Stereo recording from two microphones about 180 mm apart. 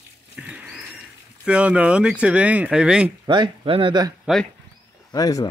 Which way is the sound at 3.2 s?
25° right (ahead or behind).